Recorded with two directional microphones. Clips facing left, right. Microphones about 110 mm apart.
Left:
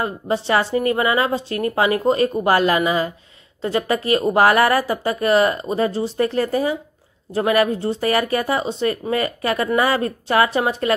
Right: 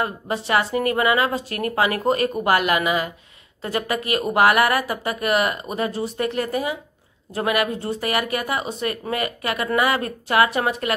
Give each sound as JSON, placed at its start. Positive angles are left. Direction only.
{"t": 0.0, "sound": "a woman's voice", "side_deg": 30}